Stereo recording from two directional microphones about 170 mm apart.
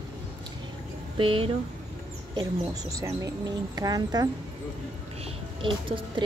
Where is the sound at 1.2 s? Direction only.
30° right (ahead or behind).